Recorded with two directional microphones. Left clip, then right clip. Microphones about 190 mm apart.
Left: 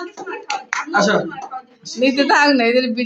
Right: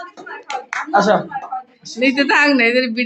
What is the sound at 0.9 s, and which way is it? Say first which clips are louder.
Speech: right 2 dB; 30° right (ahead or behind).